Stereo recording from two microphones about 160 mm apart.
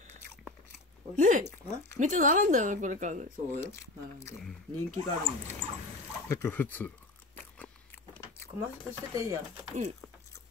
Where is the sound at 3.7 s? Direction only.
15° left (ahead or behind).